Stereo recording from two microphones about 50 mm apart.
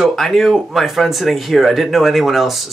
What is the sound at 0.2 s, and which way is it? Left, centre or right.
Speech, centre.